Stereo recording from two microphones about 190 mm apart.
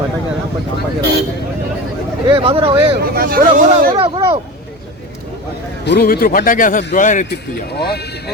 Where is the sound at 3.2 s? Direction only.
50° right (ahead or behind).